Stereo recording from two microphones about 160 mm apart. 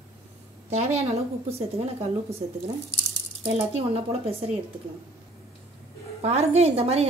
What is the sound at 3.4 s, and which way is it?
Speech, 40° right (ahead or behind).